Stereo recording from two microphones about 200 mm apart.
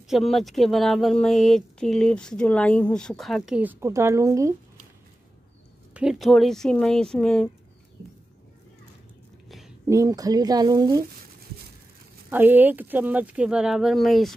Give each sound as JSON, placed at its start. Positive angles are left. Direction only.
{"t": 0.1, "sound": "speech", "side_deg": 0}
{"t": 5.9, "sound": "speech", "side_deg": 0}
{"t": 9.8, "sound": "speech", "side_deg": -15}
{"t": 12.3, "sound": "speech", "side_deg": -10}